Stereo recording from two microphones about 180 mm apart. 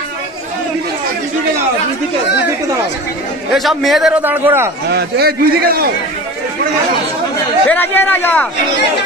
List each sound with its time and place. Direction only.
3.5 s a man's voice: centre (ahead or behind)
4.8 s a man's voice: 65° right (ahead or behind)
7.6 s a man's voice: 10° left (ahead or behind)